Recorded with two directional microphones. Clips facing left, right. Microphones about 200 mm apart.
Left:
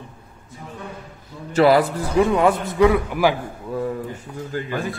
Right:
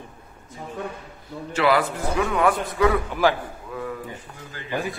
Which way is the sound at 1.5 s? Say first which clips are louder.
Left 6 dB; 40° left (ahead or behind).